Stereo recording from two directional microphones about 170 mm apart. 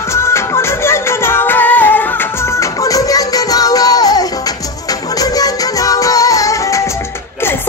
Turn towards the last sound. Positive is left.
turn(degrees=20)  # may be behind; listen again after turning